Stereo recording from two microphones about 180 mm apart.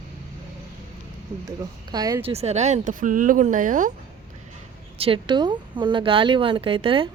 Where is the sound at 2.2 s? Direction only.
35° right (ahead or behind).